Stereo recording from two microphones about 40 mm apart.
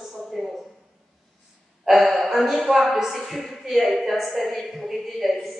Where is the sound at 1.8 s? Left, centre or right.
Centre.